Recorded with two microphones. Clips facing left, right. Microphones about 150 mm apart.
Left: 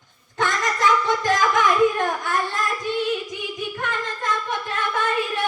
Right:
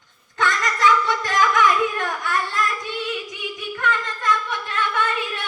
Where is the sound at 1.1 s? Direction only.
30° left (ahead or behind).